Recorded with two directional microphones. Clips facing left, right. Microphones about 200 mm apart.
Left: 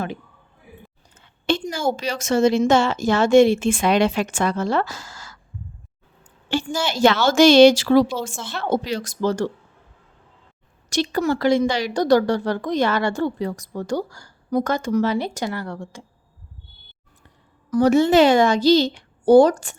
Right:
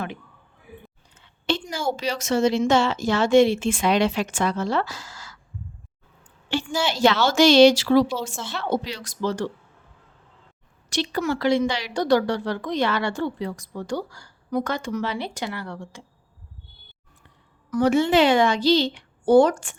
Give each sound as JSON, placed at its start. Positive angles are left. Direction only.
{"t": 1.1, "sound": "speech", "side_deg": 50}
{"t": 6.5, "sound": "speech", "side_deg": 45}
{"t": 10.8, "sound": "speech", "side_deg": 45}
{"t": 17.7, "sound": "a woman's voice", "side_deg": 40}